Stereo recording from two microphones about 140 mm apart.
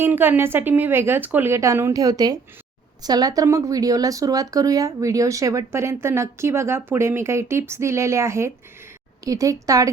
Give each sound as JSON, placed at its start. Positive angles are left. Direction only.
{"t": 0.0, "sound": "speech", "side_deg": -15}